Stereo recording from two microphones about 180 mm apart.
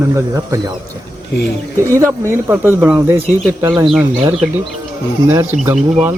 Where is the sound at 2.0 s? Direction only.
15° right (ahead or behind).